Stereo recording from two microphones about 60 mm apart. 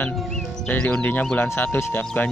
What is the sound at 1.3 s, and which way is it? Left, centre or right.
Speech, left.